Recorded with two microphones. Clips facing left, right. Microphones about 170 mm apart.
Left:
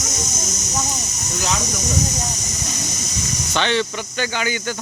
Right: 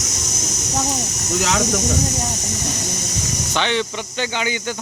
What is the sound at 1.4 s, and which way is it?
Speech, 75° right (ahead or behind).